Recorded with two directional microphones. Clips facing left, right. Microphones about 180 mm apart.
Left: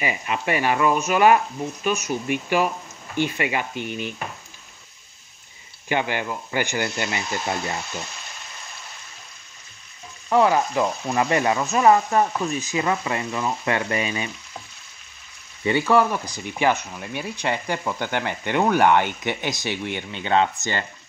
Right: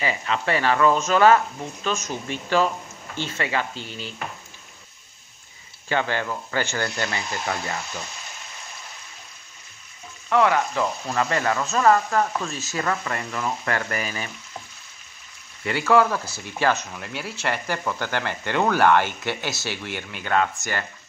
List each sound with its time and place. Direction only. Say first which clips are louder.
0.0 s speech: even; 15° left (ahead or behind)
5.9 s speech: even; 15° left (ahead or behind)
10.3 s frying: left 2 dB; 25° left (ahead or behind)
11.1 s speech: left 3 dB; 20° left (ahead or behind)
15.6 s speech: left 1 dB; 15° left (ahead or behind)